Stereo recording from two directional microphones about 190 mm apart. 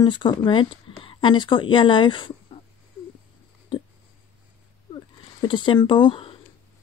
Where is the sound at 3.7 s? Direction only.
25° left (ahead or behind).